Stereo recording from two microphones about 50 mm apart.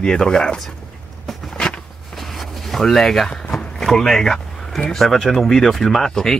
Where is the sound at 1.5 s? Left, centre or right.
Left.